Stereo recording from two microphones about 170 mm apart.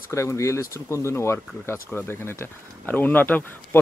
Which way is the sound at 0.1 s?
15° left (ahead or behind).